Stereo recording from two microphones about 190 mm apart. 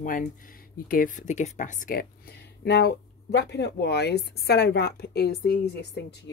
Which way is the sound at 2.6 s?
60° left (ahead or behind).